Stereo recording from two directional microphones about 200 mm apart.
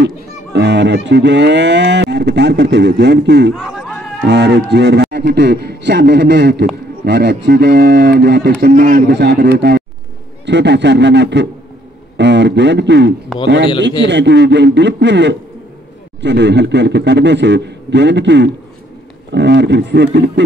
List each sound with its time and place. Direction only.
0.0 s speech: 60° right (ahead or behind)
3.5 s a sound: 5° right (ahead or behind)
4.3 s a man's voice: 60° right (ahead or behind)